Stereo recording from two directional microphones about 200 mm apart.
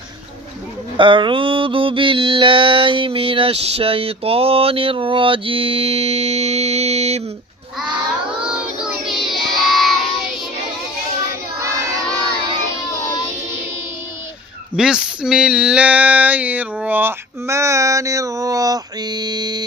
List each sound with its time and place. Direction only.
0.9 s mantra: 25° right (ahead or behind)
8.4 s child singing: 5° right (ahead or behind)
14.8 s a sound: 5° right (ahead or behind); by 19.6 s 20° right (ahead or behind)